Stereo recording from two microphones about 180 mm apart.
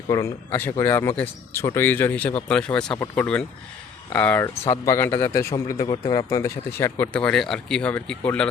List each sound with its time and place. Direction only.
0.1 s speech: 15° left (ahead or behind)